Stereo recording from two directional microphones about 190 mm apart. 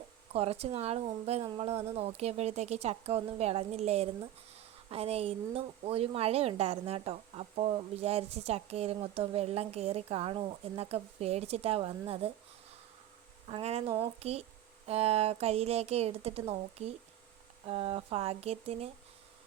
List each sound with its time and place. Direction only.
0.3 s speech: 30° right (ahead or behind)
13.5 s speech: 35° right (ahead or behind)